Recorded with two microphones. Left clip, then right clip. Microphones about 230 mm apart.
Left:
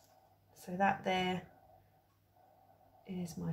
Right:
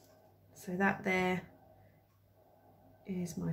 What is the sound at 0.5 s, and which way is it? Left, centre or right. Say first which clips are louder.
Speech: left 1 dB; centre.